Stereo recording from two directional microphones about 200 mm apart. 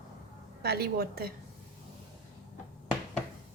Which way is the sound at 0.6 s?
50° right (ahead or behind).